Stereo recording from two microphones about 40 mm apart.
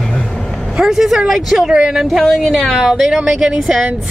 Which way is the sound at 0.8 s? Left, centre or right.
Centre.